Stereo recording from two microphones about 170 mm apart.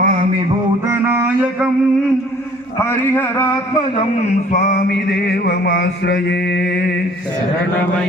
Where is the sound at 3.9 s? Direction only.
40° left (ahead or behind).